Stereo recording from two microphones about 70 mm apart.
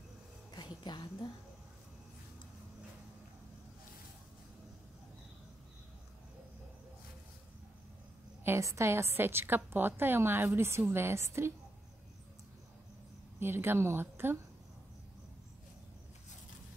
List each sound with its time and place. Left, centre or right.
0.5 s a sound: left
8.5 s a woman's voice: right
13.4 s a woman's voice: right